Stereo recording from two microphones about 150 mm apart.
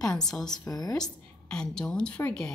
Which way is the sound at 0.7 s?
25° left (ahead or behind).